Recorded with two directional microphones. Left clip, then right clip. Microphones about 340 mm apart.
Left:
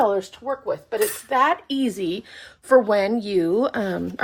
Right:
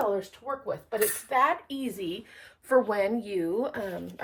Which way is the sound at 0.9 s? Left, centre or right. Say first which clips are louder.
Left 4 dB; left.